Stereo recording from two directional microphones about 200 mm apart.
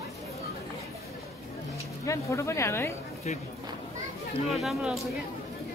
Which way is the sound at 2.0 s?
15° left (ahead or behind).